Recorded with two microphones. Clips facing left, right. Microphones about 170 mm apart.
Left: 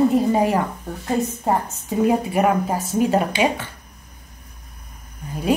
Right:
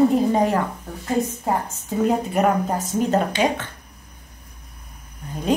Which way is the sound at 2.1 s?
5° left (ahead or behind).